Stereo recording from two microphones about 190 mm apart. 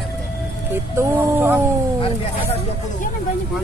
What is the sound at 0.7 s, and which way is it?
Speech, 10° right (ahead or behind).